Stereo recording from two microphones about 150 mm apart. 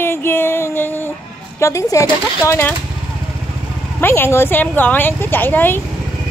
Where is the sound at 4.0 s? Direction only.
15° left (ahead or behind).